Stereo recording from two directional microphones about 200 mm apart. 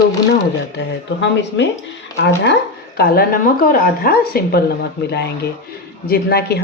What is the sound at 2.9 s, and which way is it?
A woman's voice, 50° left (ahead or behind).